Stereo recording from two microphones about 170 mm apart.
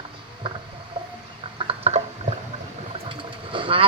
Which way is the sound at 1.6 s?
35° right (ahead or behind).